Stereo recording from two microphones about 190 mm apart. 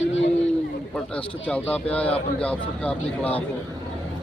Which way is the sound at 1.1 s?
5° left (ahead or behind).